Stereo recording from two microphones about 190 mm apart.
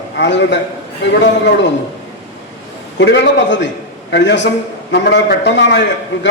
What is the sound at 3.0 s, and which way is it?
A man's voice, 70° left (ahead or behind).